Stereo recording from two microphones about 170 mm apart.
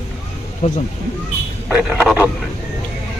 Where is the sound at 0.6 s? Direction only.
45° left (ahead or behind).